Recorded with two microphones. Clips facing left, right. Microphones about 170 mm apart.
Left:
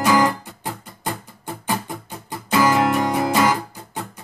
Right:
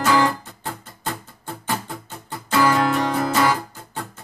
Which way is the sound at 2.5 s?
20° left (ahead or behind).